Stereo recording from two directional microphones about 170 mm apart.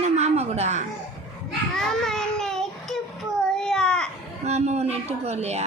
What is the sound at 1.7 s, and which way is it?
Baby cry, centre (ahead or behind).